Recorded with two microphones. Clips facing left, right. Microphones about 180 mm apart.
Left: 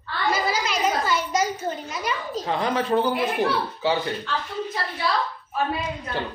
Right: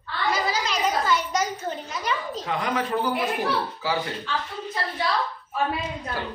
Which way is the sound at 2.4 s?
30° left (ahead or behind).